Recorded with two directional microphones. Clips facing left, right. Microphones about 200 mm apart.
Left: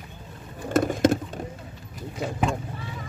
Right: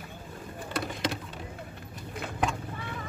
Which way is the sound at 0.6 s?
45° left (ahead or behind).